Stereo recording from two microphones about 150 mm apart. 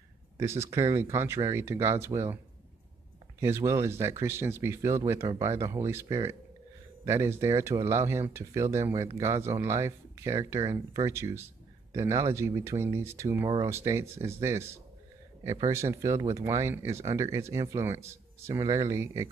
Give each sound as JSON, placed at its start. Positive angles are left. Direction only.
{"t": 0.4, "sound": "speech", "side_deg": -20}
{"t": 3.3, "sound": "speech", "side_deg": -20}